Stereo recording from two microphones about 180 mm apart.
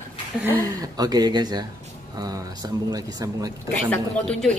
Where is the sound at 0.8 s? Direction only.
20° right (ahead or behind).